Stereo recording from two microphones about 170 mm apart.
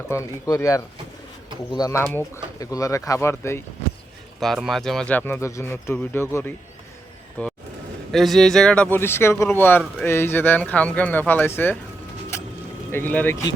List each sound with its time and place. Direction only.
0.1 s speech: 20° left (ahead or behind)
4.4 s speech: centre (ahead or behind)
12.9 s speech: 10° left (ahead or behind)